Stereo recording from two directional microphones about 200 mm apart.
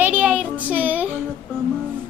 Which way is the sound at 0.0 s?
10° right (ahead or behind).